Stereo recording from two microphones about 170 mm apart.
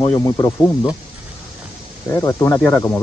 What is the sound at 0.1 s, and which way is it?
Speech, 15° left (ahead or behind).